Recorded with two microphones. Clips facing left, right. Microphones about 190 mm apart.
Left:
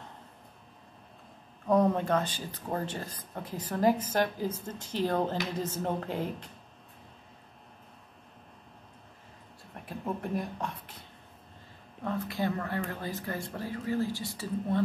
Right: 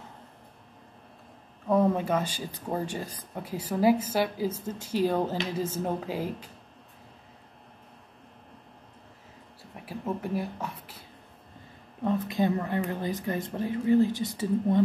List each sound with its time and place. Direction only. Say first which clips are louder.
1.7 s speech: right 1 dB; 5° right (ahead or behind)
9.6 s speech: right 2 dB; 5° right (ahead or behind)
12.0 s speech: right 5 dB; 20° right (ahead or behind)